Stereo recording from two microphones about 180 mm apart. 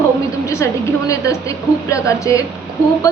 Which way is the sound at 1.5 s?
15° left (ahead or behind).